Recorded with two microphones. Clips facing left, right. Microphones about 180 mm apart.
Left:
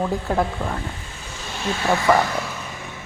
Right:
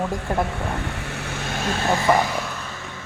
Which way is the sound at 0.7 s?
75° right (ahead or behind).